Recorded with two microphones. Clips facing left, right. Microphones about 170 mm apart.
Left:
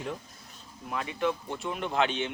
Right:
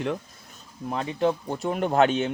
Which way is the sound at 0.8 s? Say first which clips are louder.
Right 5 dB; 35° right (ahead or behind).